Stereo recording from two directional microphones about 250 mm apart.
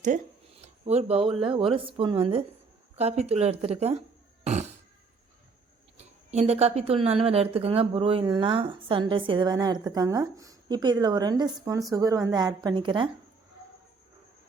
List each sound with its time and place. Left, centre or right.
0.0 s a sound: right
1.5 s speech: right
4.4 s fart: right
6.0 s speech: right